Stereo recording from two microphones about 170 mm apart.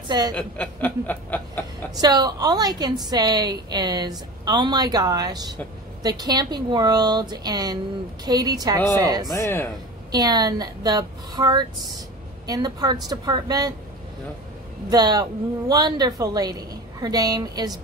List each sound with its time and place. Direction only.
0.3 s speech: 10° left (ahead or behind)
2.0 s a woman's voice: 20° right (ahead or behind)
9.3 s speech: 15° left (ahead or behind)
10.1 s a woman's voice: 25° right (ahead or behind)
14.9 s a woman's voice: 20° right (ahead or behind)